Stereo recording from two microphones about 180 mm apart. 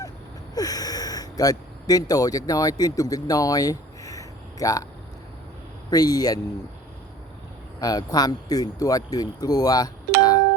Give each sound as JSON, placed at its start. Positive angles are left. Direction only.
{"t": 0.5, "sound": "speech", "side_deg": 20}
{"t": 5.9, "sound": "speech", "side_deg": 20}
{"t": 7.8, "sound": "speech", "side_deg": 20}